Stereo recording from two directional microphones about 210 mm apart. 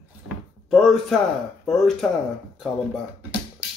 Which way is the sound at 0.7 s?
Centre (ahead or behind).